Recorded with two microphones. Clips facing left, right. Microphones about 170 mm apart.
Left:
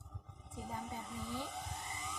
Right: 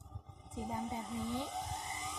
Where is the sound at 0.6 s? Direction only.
20° right (ahead or behind).